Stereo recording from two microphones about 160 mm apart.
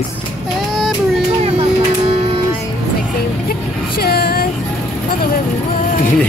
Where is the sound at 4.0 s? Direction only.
75° left (ahead or behind).